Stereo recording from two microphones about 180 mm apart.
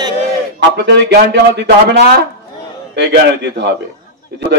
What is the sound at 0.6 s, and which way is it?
Speech, 70° right (ahead or behind).